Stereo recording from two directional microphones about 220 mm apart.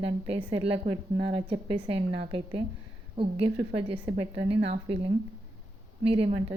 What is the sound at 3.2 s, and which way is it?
A woman's voice, 25° right (ahead or behind).